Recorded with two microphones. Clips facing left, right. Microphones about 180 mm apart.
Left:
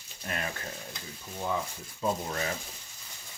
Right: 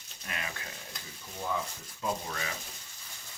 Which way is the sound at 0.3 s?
45° left (ahead or behind).